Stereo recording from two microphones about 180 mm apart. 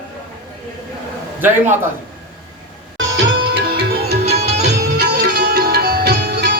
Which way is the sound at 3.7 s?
60° right (ahead or behind).